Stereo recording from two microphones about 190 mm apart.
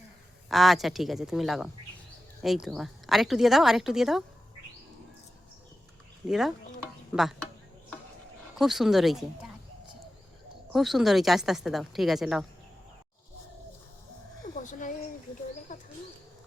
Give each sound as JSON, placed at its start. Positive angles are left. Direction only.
{"t": 0.4, "sound": "a woman's voice", "side_deg": 0}
{"t": 6.2, "sound": "a woman's voice", "side_deg": 0}
{"t": 8.5, "sound": "a woman's voice", "side_deg": 0}
{"t": 10.7, "sound": "a woman's voice", "side_deg": 0}
{"t": 14.6, "sound": "a sound", "side_deg": 40}
{"t": 15.7, "sound": "bird", "side_deg": 40}